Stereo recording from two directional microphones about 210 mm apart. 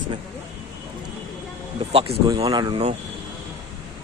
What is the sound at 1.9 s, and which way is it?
Speech, 30° right (ahead or behind).